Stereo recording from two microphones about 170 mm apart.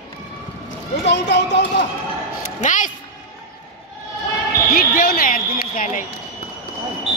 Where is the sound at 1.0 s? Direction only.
90° left.